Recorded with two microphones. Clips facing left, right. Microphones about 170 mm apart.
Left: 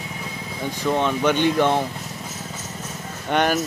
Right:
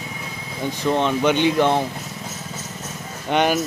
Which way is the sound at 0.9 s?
15° right (ahead or behind).